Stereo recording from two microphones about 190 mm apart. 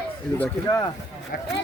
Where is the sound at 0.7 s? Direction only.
25° left (ahead or behind).